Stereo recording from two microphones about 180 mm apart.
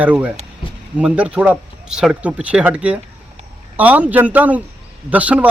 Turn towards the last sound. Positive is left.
turn(degrees=-10)  # may be behind; listen again after turning